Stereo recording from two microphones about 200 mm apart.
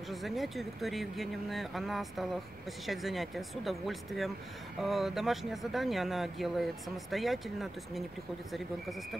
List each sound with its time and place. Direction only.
0.1 s speech: centre (ahead or behind)